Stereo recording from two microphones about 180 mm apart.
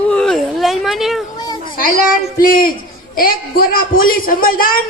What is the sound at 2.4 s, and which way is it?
A man's voice, 50° left (ahead or behind).